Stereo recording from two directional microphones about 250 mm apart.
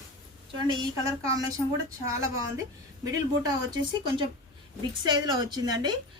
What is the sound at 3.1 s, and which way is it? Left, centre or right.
Speech, centre.